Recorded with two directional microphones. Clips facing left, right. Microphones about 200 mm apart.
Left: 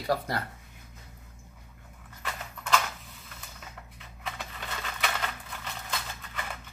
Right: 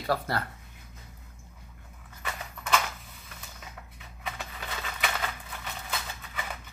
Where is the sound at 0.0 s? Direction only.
15° left (ahead or behind).